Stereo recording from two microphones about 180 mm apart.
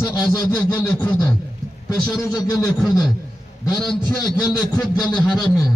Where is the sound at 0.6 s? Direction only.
10° left (ahead or behind).